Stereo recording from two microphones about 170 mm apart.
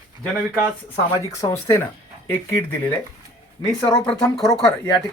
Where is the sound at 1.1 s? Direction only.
20° left (ahead or behind).